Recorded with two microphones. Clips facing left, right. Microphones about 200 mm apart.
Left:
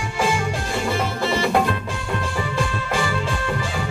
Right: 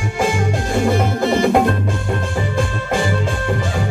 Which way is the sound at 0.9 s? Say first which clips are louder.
Right 5 dB; 50° right (ahead or behind).